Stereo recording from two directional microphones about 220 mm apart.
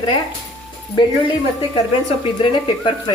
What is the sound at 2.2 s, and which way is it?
Speech, 25° left (ahead or behind).